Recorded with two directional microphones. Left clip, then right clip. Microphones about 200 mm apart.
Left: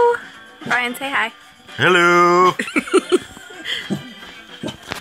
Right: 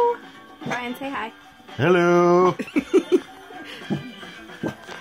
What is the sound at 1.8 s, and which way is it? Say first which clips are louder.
Music: left 5 dB; 10° right (ahead or behind).